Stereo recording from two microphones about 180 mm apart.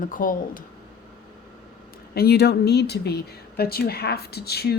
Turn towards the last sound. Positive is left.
turn(degrees=65)  # may be behind; listen again after turning